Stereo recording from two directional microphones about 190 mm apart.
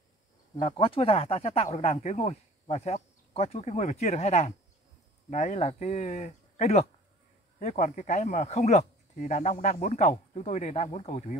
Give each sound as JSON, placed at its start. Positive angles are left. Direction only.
{"t": 0.6, "sound": "speech", "side_deg": 30}